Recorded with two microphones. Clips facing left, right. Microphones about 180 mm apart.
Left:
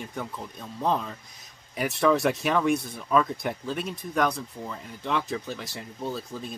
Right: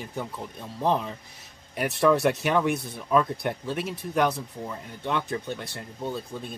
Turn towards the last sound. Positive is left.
turn(degrees=0)  # may be behind; listen again after turning